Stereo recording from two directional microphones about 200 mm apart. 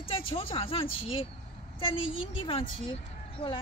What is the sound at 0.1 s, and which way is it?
A woman's voice, 30° left (ahead or behind).